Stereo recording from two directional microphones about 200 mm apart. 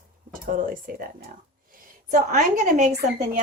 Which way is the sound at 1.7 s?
40° right (ahead or behind).